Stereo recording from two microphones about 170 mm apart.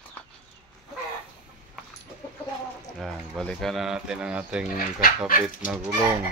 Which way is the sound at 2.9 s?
Centre (ahead or behind).